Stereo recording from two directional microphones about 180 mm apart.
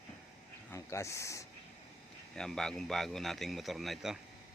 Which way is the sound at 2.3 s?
5° left (ahead or behind).